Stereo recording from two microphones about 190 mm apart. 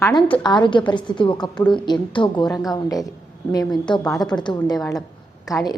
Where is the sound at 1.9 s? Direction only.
25° left (ahead or behind).